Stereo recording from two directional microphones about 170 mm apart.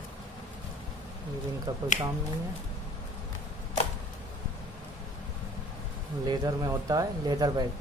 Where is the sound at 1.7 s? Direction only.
20° right (ahead or behind).